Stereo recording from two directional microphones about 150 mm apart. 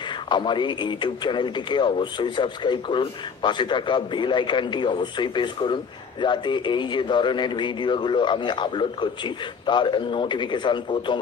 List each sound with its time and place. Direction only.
0.3 s speech: 30° left (ahead or behind)